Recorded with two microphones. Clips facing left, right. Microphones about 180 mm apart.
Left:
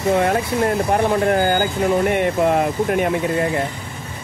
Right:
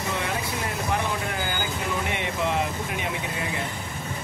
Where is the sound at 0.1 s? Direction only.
55° left (ahead or behind).